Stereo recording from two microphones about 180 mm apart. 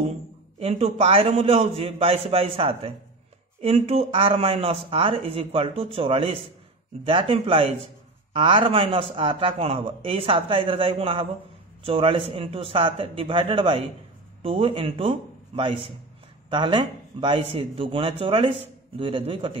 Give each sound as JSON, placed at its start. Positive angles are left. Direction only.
{"t": 0.6, "sound": "a man's voice", "side_deg": -35}